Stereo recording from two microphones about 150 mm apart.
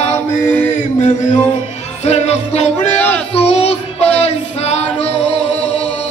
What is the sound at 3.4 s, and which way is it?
Female singing, 45° left (ahead or behind).